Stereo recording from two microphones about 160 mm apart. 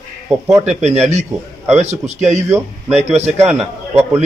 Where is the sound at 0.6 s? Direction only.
45° right (ahead or behind).